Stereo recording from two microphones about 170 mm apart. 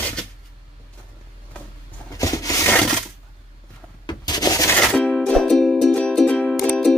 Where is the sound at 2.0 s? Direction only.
20° left (ahead or behind).